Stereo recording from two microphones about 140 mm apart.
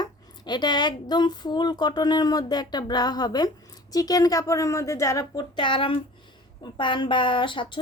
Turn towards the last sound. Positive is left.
turn(degrees=35)  # may be behind; listen again after turning